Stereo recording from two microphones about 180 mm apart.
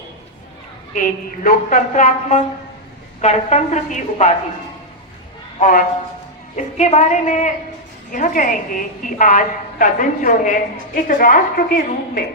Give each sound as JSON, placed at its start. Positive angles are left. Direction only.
{"t": 0.9, "sound": "a woman's voice", "side_deg": 45}
{"t": 5.5, "sound": "a woman's voice", "side_deg": 45}